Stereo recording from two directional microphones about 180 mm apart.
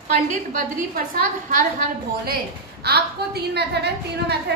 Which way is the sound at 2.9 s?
60° right (ahead or behind).